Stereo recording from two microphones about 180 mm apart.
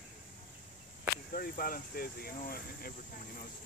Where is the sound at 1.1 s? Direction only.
55° left (ahead or behind).